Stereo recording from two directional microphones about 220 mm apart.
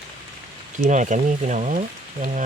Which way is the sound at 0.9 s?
35° right (ahead or behind).